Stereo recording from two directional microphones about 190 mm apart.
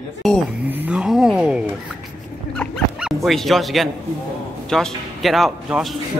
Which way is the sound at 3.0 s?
Centre (ahead or behind).